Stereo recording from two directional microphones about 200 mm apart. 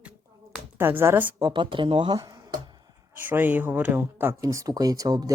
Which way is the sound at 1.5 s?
25° right (ahead or behind).